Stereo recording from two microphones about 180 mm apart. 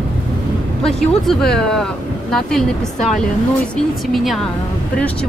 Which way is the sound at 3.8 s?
Centre (ahead or behind).